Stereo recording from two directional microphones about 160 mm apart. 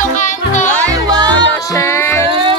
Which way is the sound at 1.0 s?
25° right (ahead or behind).